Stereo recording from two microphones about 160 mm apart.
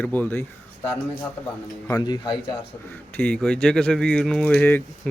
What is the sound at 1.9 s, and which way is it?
Speech, 25° left (ahead or behind).